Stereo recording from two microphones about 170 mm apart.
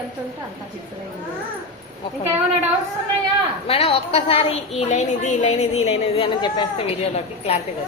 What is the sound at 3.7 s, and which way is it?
A woman's voice, 35° left (ahead or behind).